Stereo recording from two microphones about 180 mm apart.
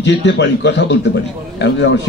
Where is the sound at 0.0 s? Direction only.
80° left.